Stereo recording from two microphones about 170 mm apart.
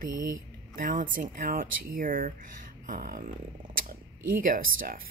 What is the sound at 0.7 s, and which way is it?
A woman's voice, 50° right (ahead or behind).